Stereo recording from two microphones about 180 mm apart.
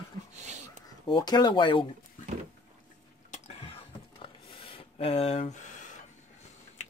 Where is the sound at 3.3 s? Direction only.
35° left (ahead or behind).